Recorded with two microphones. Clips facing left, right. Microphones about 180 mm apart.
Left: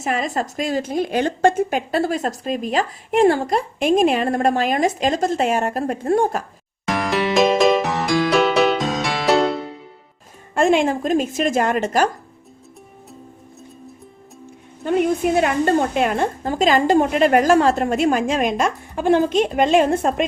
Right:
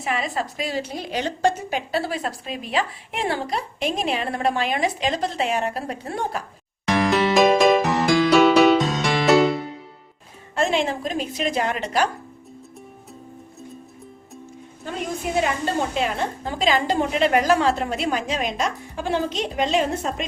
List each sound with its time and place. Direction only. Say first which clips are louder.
0.0 s a woman's voice: left 3 dB; 45° left (ahead or behind)
6.8 s music: right 1 dB; centre (ahead or behind)
10.5 s a woman's voice: left 6 dB; 50° left (ahead or behind)
14.8 s a woman's voice: left 10 dB; 60° left (ahead or behind)